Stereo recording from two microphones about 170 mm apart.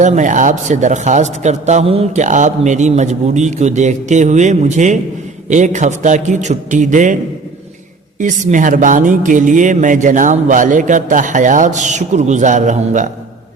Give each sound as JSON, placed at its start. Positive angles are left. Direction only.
{"t": 0.0, "sound": "speech", "side_deg": -45}
{"t": 8.2, "sound": "speech", "side_deg": -45}